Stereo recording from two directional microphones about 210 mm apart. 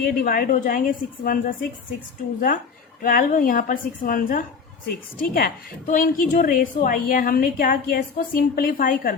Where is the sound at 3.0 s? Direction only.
40° left (ahead or behind).